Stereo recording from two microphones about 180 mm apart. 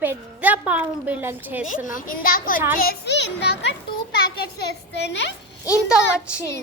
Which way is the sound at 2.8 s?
65° left (ahead or behind).